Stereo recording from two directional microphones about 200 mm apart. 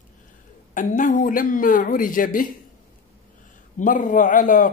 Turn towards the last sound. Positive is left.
turn(degrees=40)  # may be behind; listen again after turning